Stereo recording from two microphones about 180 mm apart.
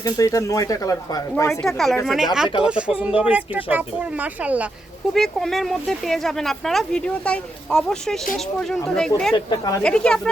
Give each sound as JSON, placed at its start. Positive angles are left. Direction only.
{"t": 0.0, "sound": "speech", "side_deg": 20}
{"t": 1.6, "sound": "speech", "side_deg": 0}
{"t": 5.1, "sound": "speech", "side_deg": 0}
{"t": 9.3, "sound": "speech", "side_deg": 25}
{"t": 9.8, "sound": "speech", "side_deg": 5}